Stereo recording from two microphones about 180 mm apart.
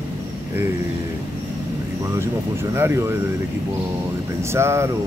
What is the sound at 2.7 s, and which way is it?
Speech, 15° right (ahead or behind).